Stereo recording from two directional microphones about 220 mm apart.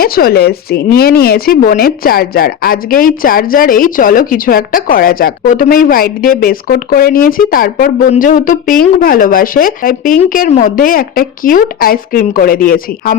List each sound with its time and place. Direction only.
0.0 s speech: 45° left (ahead or behind)